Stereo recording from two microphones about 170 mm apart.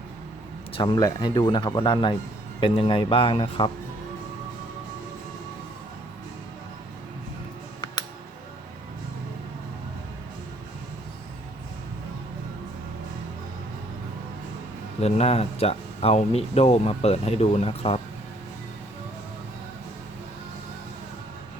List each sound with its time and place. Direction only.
0.7 s speech: 25° left (ahead or behind)
15.0 s speech: 35° left (ahead or behind)